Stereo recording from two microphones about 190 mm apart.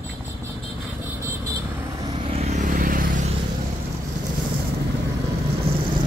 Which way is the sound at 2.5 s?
45° right (ahead or behind).